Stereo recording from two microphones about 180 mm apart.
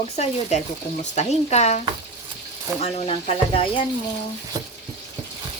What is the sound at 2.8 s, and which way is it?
Speech, 35° left (ahead or behind).